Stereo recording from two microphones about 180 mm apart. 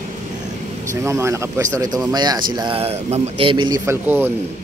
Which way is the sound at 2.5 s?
30° right (ahead or behind).